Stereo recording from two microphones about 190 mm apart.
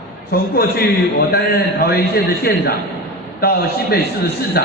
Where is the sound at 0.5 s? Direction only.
55° left (ahead or behind).